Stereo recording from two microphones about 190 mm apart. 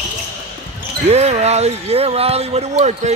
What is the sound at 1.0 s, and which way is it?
Speech, 35° right (ahead or behind).